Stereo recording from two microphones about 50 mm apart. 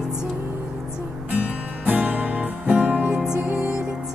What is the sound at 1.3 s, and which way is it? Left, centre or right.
Music, right.